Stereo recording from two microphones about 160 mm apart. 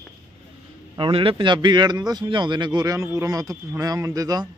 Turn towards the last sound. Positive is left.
turn(degrees=-20)  # may be behind; listen again after turning